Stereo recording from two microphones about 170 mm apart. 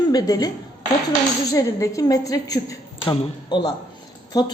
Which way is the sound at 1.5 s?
20° left (ahead or behind).